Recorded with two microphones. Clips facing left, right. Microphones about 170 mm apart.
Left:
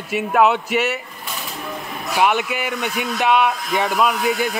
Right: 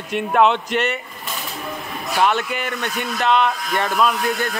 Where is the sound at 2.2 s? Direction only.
10° left (ahead or behind).